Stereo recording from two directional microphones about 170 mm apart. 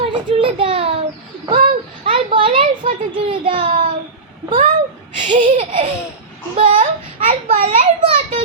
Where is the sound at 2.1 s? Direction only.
30° right (ahead or behind).